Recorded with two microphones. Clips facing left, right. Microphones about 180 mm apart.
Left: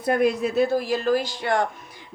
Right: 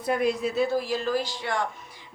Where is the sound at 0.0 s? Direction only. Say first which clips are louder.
Left 4 dB; 55° left (ahead or behind).